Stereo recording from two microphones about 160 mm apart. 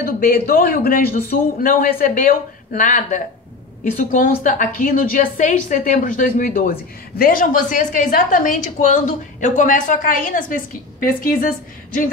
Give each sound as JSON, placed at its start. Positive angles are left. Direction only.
{"t": 0.0, "sound": "a woman's voice", "side_deg": 65}